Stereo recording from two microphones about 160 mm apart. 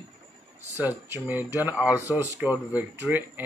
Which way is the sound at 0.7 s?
15° right (ahead or behind).